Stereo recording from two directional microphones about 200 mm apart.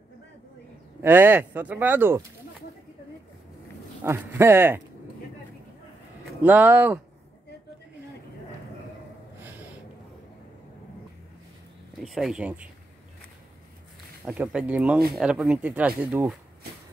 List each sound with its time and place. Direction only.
1.0 s speech: 10° right (ahead or behind)
4.0 s speech: 10° right (ahead or behind)
6.4 s speech: 10° right (ahead or behind)
9.4 s a sound: 10° right (ahead or behind)
12.0 s speech: centre (ahead or behind)
14.2 s speech: 5° right (ahead or behind)